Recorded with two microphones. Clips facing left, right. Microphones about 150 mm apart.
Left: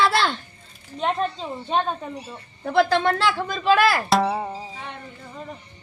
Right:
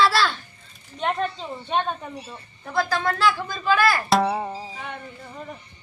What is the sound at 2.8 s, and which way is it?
Speech, 25° left (ahead or behind).